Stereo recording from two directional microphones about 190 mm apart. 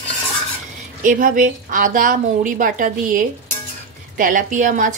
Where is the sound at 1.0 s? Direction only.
45° right (ahead or behind).